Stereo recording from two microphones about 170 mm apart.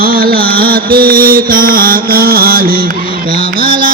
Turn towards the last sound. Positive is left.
turn(degrees=-55)  # may be behind; listen again after turning